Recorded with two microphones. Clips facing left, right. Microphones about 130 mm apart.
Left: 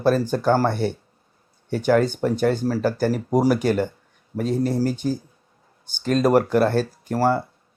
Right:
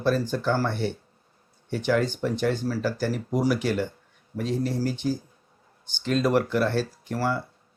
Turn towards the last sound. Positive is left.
turn(degrees=45)  # may be behind; listen again after turning